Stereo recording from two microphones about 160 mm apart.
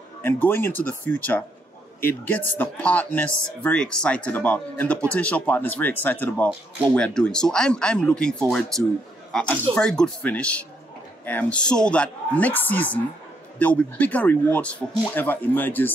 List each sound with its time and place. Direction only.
0.2 s speech: 10° left (ahead or behind)